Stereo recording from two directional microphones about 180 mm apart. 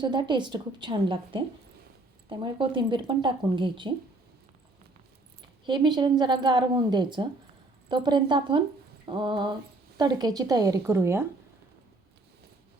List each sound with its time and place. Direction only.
0.0 s speech: 25° right (ahead or behind)
5.6 s speech: 25° right (ahead or behind)